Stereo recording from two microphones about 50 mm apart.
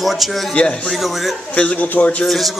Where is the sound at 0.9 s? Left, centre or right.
Centre.